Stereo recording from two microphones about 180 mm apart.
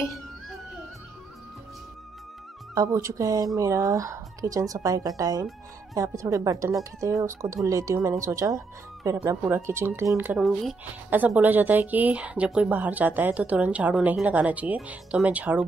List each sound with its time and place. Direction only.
2.7 s speech: 20° right (ahead or behind)